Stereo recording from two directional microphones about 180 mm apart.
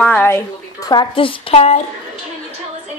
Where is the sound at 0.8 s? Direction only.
25° left (ahead or behind).